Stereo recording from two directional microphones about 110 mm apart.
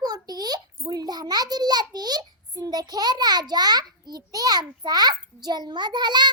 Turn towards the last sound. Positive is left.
turn(degrees=-40)  # may be behind; listen again after turning